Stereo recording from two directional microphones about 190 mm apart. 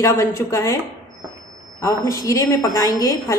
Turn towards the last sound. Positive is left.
turn(degrees=15)  # may be behind; listen again after turning